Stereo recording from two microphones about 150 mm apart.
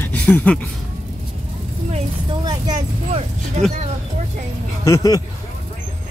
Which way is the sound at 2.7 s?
50° right (ahead or behind).